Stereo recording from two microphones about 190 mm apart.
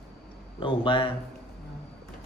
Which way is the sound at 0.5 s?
25° left (ahead or behind).